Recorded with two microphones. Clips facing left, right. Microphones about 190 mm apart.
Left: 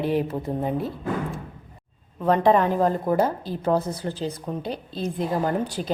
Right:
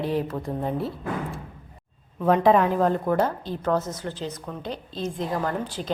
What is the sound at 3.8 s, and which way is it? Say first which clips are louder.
Speech: left 3 dB; 35° left (ahead or behind).